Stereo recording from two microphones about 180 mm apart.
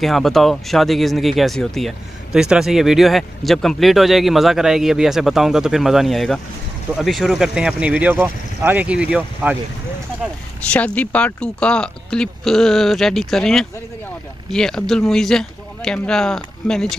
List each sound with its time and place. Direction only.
0.0 s speech: centre (ahead or behind)
10.7 s speech: 10° left (ahead or behind)